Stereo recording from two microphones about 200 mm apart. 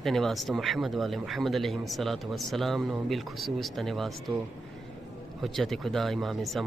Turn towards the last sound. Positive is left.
turn(degrees=0)  # may be behind; listen again after turning